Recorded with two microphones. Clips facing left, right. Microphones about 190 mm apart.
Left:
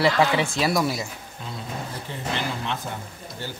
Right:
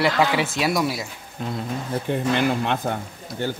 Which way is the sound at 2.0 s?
55° right (ahead or behind).